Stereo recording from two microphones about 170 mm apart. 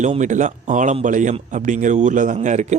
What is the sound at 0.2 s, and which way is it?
Speech, 45° right (ahead or behind).